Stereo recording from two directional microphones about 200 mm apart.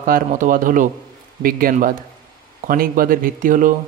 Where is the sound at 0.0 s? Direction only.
45° right (ahead or behind).